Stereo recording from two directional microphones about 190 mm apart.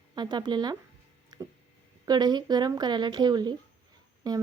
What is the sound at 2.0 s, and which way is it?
A woman's voice, 20° right (ahead or behind).